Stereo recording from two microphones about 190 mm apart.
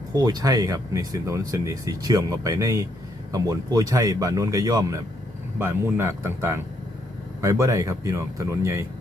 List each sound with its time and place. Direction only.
0.1 s speech: 20° right (ahead or behind)